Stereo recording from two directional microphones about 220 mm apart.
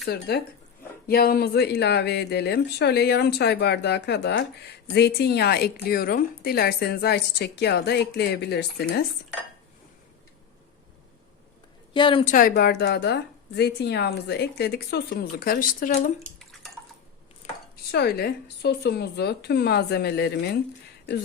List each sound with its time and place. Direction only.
0.0 s a woman's voice: 45° left (ahead or behind)
11.9 s a woman's voice: 20° left (ahead or behind)
12.2 s a woman's voice: 35° left (ahead or behind)
16.2 s bathtub: centre (ahead or behind)
17.4 s chopping: 30° left (ahead or behind)
17.9 s a woman's voice: 45° left (ahead or behind)